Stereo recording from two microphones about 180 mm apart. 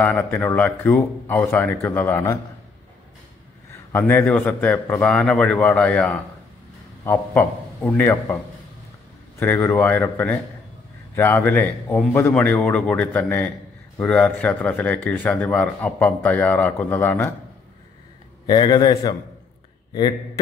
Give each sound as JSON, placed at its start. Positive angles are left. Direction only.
{"t": 0.0, "sound": "speech", "side_deg": 10}
{"t": 3.7, "sound": "speech", "side_deg": 10}
{"t": 9.4, "sound": "speech", "side_deg": 10}
{"t": 18.5, "sound": "a man's voice", "side_deg": 25}